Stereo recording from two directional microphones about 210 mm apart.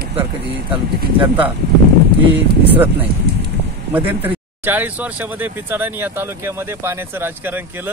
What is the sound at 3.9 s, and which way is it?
Speech, 10° right (ahead or behind).